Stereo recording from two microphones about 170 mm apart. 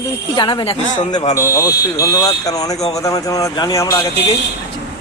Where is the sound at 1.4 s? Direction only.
20° left (ahead or behind).